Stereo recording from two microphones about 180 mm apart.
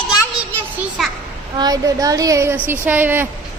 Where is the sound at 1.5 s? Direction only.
20° right (ahead or behind).